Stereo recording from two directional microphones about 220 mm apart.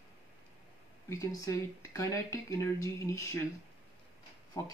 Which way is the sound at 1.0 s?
15° left (ahead or behind).